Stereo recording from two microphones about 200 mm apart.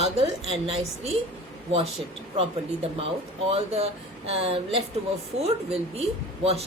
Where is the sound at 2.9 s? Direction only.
25° right (ahead or behind).